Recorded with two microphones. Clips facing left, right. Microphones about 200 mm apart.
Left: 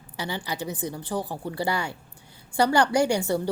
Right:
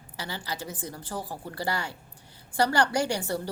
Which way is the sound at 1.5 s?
15° left (ahead or behind).